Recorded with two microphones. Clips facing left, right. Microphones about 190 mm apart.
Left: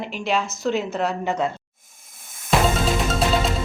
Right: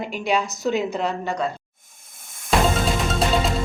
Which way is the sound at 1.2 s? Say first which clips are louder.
Left 2 dB; 25° left (ahead or behind).